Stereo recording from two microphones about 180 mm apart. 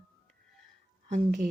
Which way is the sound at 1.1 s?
50° right (ahead or behind).